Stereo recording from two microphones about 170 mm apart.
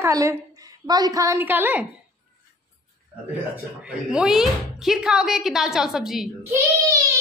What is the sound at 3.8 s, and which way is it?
A woman's voice, 5° right (ahead or behind).